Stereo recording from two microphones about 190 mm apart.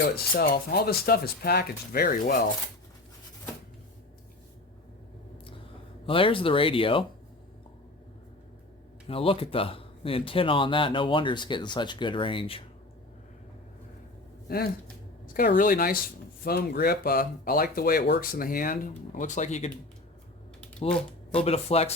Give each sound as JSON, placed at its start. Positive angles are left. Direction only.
{"t": 0.0, "sound": "speech", "side_deg": 55}
{"t": 6.1, "sound": "a man's voice", "side_deg": 30}
{"t": 9.0, "sound": "a man's voice", "side_deg": 30}
{"t": 14.4, "sound": "speech", "side_deg": 55}
{"t": 20.8, "sound": "speech", "side_deg": 30}